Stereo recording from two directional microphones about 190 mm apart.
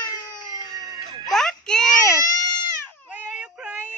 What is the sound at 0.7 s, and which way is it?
Baby cry, 20° right (ahead or behind).